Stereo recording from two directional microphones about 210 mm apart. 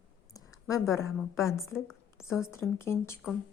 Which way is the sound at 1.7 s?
Centre (ahead or behind).